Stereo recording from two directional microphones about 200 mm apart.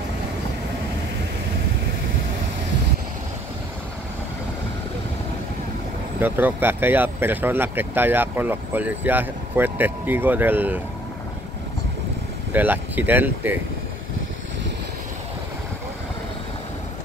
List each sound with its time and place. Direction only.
6.1 s speech: 10° right (ahead or behind)
12.5 s speech: 10° right (ahead or behind)